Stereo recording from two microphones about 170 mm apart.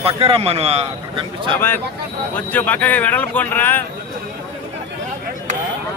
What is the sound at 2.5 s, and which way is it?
Speech, 10° left (ahead or behind).